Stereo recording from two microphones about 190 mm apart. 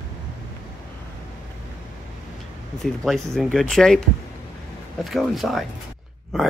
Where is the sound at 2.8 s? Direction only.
Centre (ahead or behind).